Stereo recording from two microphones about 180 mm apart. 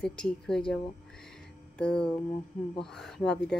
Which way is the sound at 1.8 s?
5° left (ahead or behind).